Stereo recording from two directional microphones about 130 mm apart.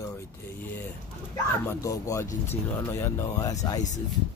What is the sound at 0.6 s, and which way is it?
Speech, 15° left (ahead or behind).